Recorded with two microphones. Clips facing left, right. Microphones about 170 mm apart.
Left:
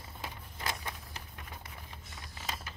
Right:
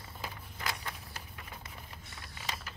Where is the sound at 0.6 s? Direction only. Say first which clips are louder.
Left 1 dB; 15° left (ahead or behind).